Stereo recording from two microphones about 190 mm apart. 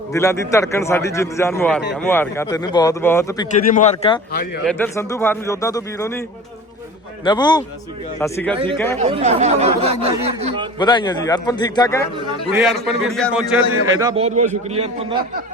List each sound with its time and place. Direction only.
0.1 s a man's voice: 15° left (ahead or behind)
3.5 s speech: 40° left (ahead or behind)
4.3 s speech: 55° left (ahead or behind)
4.6 s a man's voice: 10° left (ahead or behind)
7.3 s a man's voice: 25° left (ahead or behind)
8.2 s a man's voice: 10° left (ahead or behind)
8.5 s speech: 25° right (ahead or behind)
10.8 s a man's voice: 25° left (ahead or behind)
12.5 s a man's voice: centre (ahead or behind)
14.2 s speech: 35° right (ahead or behind)